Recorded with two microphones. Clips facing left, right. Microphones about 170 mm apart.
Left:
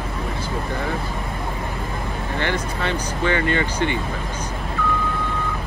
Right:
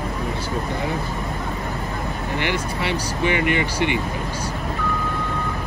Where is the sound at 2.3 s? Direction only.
15° right (ahead or behind).